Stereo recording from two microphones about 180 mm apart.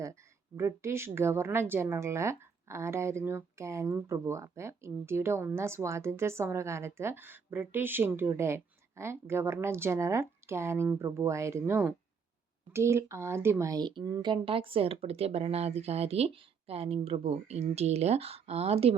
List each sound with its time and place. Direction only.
0.5 s a woman's voice: 15° right (ahead or behind); by 18.9 s 35° right (ahead or behind)